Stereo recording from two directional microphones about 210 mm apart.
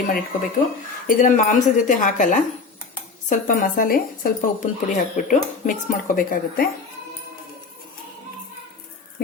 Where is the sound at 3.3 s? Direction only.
40° left (ahead or behind).